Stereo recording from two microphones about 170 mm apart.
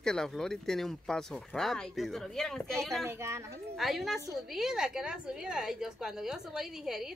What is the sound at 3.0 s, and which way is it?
Speech, 15° right (ahead or behind).